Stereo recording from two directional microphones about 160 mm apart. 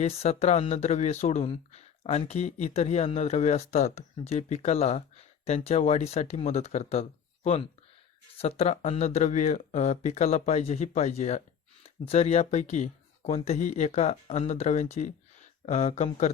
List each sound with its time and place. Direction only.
0.2 s speech: 40° left (ahead or behind)